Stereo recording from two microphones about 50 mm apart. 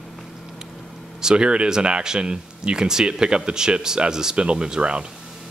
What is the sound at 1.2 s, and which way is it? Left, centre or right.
Speech, centre.